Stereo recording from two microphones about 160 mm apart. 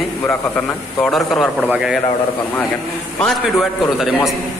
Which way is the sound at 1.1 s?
Centre (ahead or behind).